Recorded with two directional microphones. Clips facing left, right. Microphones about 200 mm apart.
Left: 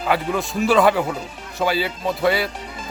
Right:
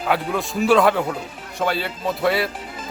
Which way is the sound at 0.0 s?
Centre (ahead or behind).